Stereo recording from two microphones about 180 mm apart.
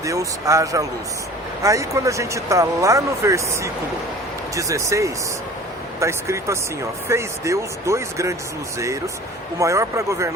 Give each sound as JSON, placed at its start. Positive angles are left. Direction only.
{"t": 0.0, "sound": "speech", "side_deg": -20}
{"t": 9.6, "sound": "speech", "side_deg": -15}